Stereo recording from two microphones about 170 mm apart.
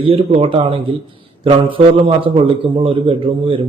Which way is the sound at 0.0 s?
35° right (ahead or behind).